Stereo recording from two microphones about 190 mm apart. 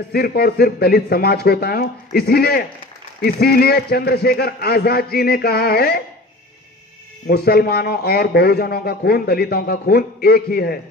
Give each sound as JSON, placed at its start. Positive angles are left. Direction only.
{"t": 0.1, "sound": "a man's voice", "side_deg": 55}
{"t": 7.2, "sound": "a man's voice", "side_deg": 55}